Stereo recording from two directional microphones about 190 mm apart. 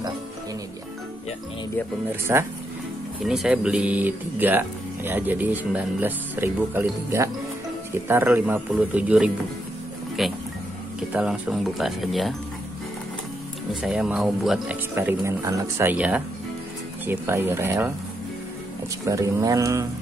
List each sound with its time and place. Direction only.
2.3 s speech: 15° right (ahead or behind)
3.3 s speech: 5° right (ahead or behind)
13.7 s speech: 5° right (ahead or behind)
19.0 s speech: 15° right (ahead or behind)